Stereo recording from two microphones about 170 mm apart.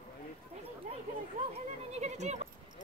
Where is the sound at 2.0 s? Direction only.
40° right (ahead or behind).